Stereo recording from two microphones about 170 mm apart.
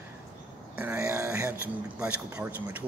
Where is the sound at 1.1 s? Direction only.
15° right (ahead or behind).